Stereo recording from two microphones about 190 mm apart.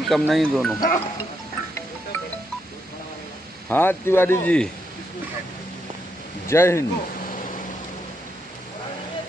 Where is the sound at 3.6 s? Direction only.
10° left (ahead or behind).